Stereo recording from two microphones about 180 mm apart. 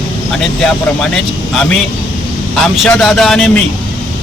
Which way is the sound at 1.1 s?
5° left (ahead or behind).